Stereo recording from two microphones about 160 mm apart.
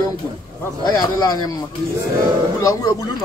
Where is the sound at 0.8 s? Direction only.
25° left (ahead or behind).